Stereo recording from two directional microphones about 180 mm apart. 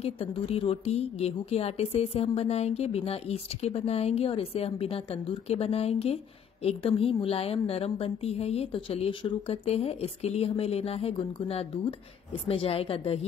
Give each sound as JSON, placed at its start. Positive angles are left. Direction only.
{"t": 0.0, "sound": "a woman's voice", "side_deg": 35}